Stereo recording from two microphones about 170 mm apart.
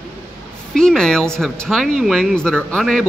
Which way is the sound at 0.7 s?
5° left (ahead or behind).